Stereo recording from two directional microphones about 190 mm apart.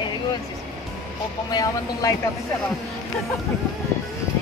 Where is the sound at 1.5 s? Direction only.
20° left (ahead or behind).